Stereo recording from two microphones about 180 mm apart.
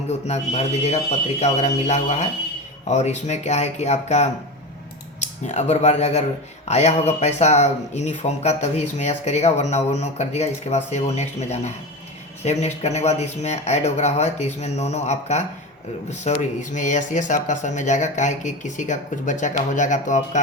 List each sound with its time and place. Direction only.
0.1 s speech: 35° left (ahead or behind)